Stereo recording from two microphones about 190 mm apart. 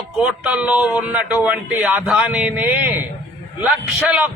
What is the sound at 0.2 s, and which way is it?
A man's voice, 5° right (ahead or behind).